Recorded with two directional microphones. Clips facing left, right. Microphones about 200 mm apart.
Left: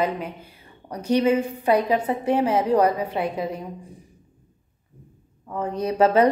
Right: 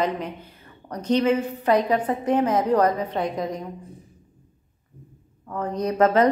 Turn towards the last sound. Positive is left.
turn(degrees=10)  # may be behind; listen again after turning